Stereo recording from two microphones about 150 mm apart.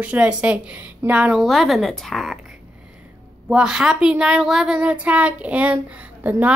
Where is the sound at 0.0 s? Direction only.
10° right (ahead or behind).